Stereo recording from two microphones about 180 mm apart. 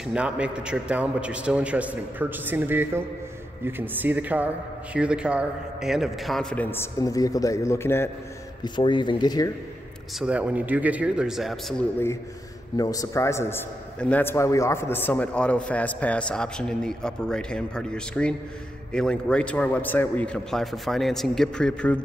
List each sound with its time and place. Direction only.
0.0 s a man's voice: 5° right (ahead or behind); by 8.1 s 15° left (ahead or behind)
8.6 s speech: 25° left (ahead or behind)
10.1 s a man's voice: 5° right (ahead or behind)
12.7 s a man's voice: 20° left (ahead or behind)